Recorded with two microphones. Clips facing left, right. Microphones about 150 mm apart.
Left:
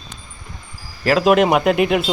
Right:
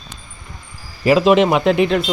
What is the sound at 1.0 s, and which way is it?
A man's voice, centre (ahead or behind).